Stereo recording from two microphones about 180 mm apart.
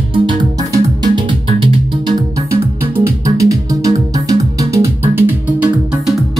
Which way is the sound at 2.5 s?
15° right (ahead or behind).